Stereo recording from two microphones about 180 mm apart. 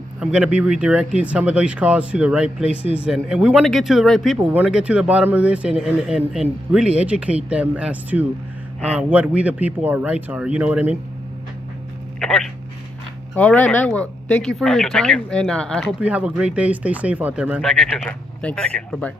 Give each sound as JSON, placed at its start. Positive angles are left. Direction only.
{"t": 0.2, "sound": "speech", "side_deg": -5}
{"t": 2.8, "sound": "speech", "side_deg": 30}
{"t": 3.1, "sound": "speech", "side_deg": -5}
{"t": 12.2, "sound": "speech", "side_deg": 5}
{"t": 16.0, "sound": "speech", "side_deg": -5}